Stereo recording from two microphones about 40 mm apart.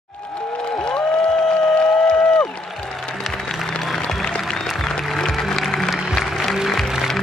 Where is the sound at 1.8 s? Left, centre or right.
Left.